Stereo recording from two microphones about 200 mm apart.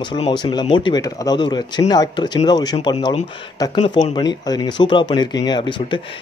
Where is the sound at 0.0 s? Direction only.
25° left (ahead or behind).